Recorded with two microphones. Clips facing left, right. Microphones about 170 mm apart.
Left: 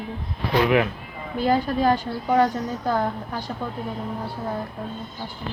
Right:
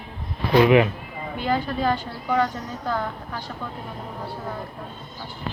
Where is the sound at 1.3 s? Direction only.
40° left (ahead or behind).